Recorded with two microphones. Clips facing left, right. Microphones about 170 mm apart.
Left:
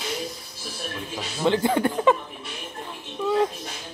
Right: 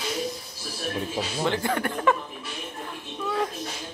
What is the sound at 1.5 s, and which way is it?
Speech, 20° left (ahead or behind).